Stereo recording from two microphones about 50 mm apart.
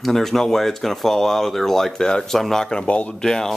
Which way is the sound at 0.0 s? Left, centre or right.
Centre.